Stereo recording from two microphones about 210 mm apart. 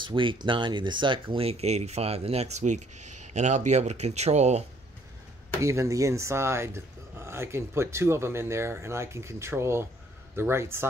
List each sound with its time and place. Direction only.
0.0 s speech: 25° right (ahead or behind)
5.6 s speech: 15° right (ahead or behind)